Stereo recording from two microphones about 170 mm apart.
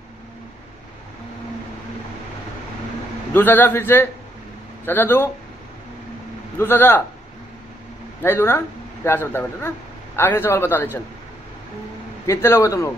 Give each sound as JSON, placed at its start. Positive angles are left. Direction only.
{"t": 3.3, "sound": "a man's voice", "side_deg": 10}
{"t": 6.6, "sound": "a man's voice", "side_deg": 10}
{"t": 8.2, "sound": "speech", "side_deg": 15}
{"t": 12.3, "sound": "a man's voice", "side_deg": 15}